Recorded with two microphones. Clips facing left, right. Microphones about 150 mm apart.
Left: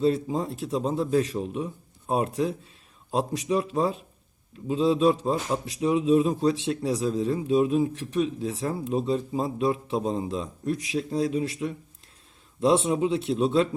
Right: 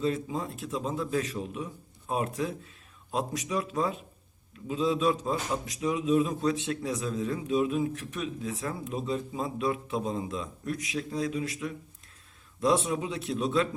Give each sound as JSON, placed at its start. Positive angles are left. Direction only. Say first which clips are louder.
{"t": 0.0, "sound": "a man's voice", "louder": "left 6 dB", "side_deg": 35}